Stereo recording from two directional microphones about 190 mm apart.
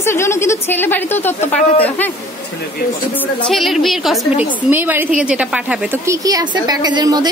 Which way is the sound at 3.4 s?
Centre (ahead or behind).